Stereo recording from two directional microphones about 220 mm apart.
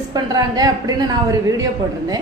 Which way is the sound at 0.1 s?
15° right (ahead or behind).